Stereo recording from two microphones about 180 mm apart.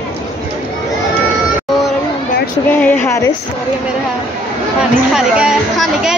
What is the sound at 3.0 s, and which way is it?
Speech, 15° left (ahead or behind).